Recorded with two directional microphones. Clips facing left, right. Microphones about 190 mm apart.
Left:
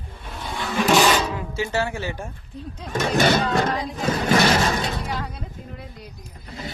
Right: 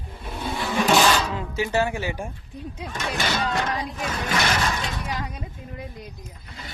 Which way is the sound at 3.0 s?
55° left (ahead or behind).